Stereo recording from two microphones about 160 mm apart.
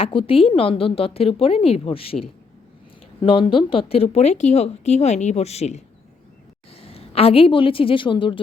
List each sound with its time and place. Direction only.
0.0 s speech: 35° left (ahead or behind)
3.2 s a woman's voice: 35° left (ahead or behind)